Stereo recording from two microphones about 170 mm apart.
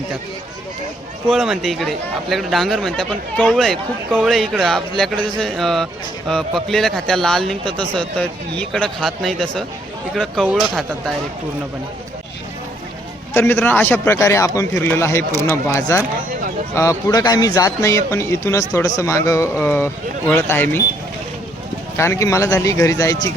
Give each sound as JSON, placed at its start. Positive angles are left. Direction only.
{"t": 1.3, "sound": "speech", "side_deg": 0}
{"t": 13.3, "sound": "a man's voice", "side_deg": 15}
{"t": 21.9, "sound": "a man's voice", "side_deg": 15}